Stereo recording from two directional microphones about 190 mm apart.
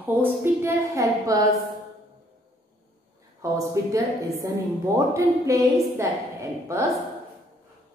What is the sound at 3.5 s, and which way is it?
A woman's voice, 15° right (ahead or behind).